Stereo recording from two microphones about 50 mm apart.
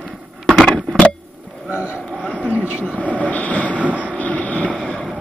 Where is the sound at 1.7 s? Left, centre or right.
Right.